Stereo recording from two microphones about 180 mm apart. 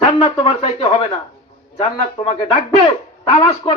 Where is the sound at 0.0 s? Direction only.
25° left (ahead or behind).